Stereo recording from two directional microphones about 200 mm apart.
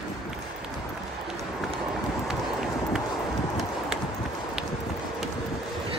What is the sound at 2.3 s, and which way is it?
Run, centre (ahead or behind).